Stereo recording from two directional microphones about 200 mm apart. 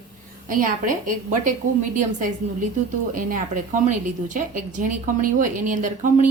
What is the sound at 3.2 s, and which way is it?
A woman's voice, 40° right (ahead or behind).